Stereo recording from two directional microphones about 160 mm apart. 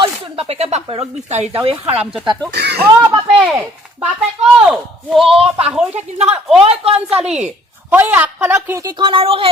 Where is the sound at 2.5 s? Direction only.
90° right.